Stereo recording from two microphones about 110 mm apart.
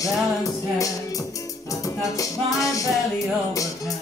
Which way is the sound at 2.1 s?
30° left (ahead or behind).